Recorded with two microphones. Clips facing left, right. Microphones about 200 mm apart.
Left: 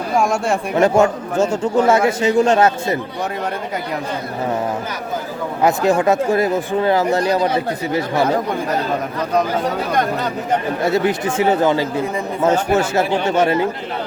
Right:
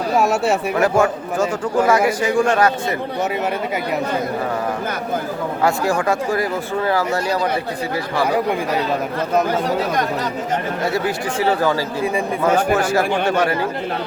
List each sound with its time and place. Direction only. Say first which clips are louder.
0.2 s speech: even; 5° right (ahead or behind)
0.8 s speech: left 5 dB; 25° left (ahead or behind)
5.6 s speech: left 4 dB; 20° left (ahead or behind)
10.8 s speech: left 5 dB; 20° left (ahead or behind)